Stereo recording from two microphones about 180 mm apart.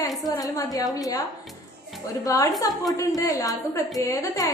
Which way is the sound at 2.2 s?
20° left (ahead or behind).